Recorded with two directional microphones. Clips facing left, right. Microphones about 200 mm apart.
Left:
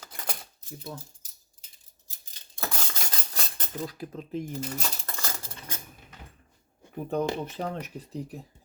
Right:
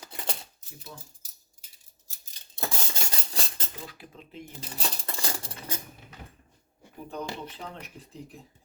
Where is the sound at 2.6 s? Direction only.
30° right (ahead or behind).